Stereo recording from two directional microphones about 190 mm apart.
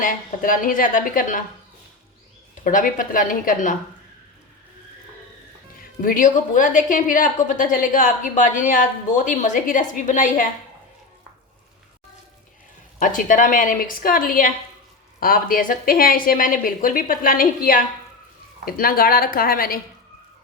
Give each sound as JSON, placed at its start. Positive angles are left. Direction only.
{"t": 0.0, "sound": "a woman's voice", "side_deg": 45}
{"t": 2.6, "sound": "a woman's voice", "side_deg": 45}
{"t": 6.0, "sound": "a woman's voice", "side_deg": 45}
{"t": 13.0, "sound": "a woman's voice", "side_deg": 45}